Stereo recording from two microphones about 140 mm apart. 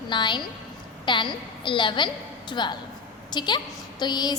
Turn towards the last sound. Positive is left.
turn(degrees=30)  # may be behind; listen again after turning